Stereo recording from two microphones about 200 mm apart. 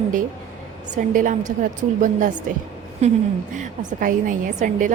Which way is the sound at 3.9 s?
45° right (ahead or behind).